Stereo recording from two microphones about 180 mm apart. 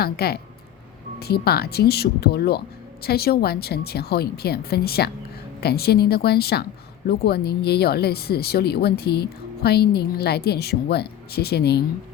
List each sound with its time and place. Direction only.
0.0 s speech: 60° left (ahead or behind)